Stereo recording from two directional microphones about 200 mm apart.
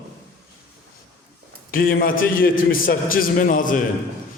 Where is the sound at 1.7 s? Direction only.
45° left (ahead or behind).